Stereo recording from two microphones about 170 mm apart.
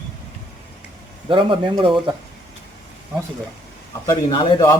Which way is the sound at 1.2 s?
30° right (ahead or behind).